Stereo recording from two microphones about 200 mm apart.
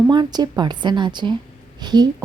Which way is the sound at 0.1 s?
20° right (ahead or behind).